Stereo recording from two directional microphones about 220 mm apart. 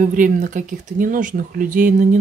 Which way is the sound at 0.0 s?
35° right (ahead or behind).